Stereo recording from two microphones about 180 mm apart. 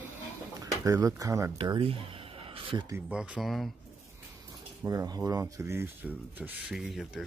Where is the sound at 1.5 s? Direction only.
25° right (ahead or behind).